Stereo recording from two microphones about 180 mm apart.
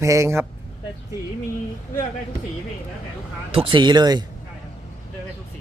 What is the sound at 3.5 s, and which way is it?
Speech, 30° right (ahead or behind).